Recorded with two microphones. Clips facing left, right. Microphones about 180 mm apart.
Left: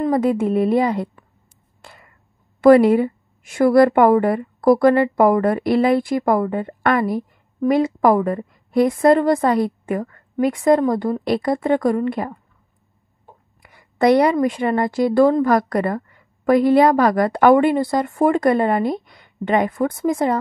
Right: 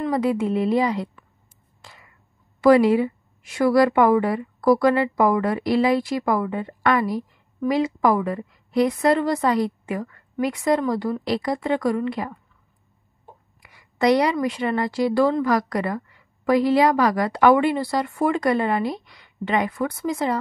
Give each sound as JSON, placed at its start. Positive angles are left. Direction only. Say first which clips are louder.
{"t": 0.0, "sound": "a woman's voice", "louder": "left 4 dB", "side_deg": 45}
{"t": 1.8, "sound": "finger snapping", "louder": "left 3 dB", "side_deg": 55}
{"t": 2.6, "sound": "a woman's voice", "louder": "left 4 dB", "side_deg": 55}
{"t": 13.6, "sound": "a woman's voice", "louder": "left 4 dB", "side_deg": 50}